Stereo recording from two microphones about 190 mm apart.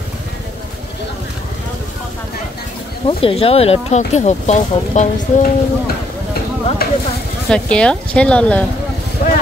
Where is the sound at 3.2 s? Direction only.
30° left (ahead or behind).